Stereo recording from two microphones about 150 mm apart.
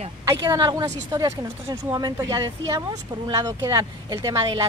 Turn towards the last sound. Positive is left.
turn(degrees=-20)  # may be behind; listen again after turning